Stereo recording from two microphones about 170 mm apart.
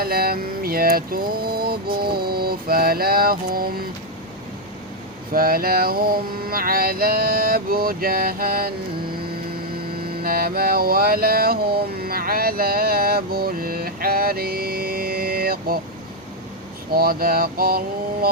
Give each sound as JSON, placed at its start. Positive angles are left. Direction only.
{"t": 0.0, "sound": "mantra", "side_deg": -65}
{"t": 5.3, "sound": "mantra", "side_deg": -60}
{"t": 10.2, "sound": "mantra", "side_deg": -60}
{"t": 16.9, "sound": "mantra", "side_deg": -60}